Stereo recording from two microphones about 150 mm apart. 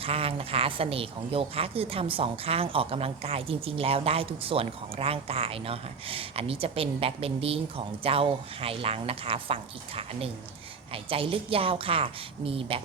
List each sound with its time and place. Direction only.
0.0 s a woman's voice: 40° right (ahead or behind)